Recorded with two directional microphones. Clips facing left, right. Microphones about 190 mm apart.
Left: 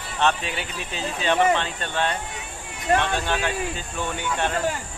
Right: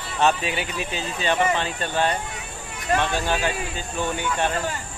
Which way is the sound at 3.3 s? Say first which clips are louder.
Right 1 dB; 5° right (ahead or behind).